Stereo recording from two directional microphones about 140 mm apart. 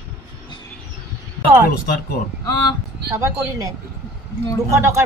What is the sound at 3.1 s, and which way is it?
Speech, 20° right (ahead or behind).